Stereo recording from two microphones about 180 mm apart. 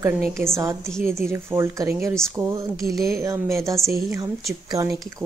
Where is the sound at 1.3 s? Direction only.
15° right (ahead or behind).